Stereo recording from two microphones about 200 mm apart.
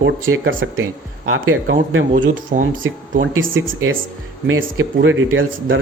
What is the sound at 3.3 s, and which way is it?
Speech, 75° right (ahead or behind).